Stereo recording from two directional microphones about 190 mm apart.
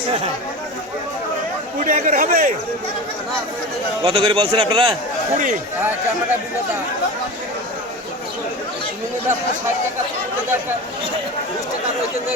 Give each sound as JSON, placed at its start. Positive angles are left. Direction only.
{"t": 1.8, "sound": "speech", "side_deg": -45}
{"t": 4.0, "sound": "a man's voice", "side_deg": -30}